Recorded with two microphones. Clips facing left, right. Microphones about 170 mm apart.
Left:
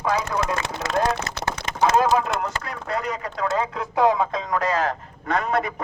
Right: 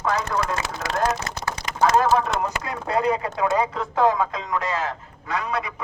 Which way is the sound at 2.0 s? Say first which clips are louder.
Left 1 dB; 10° left (ahead or behind).